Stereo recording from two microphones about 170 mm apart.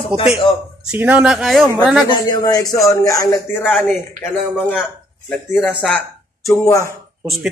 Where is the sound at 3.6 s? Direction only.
5° left (ahead or behind).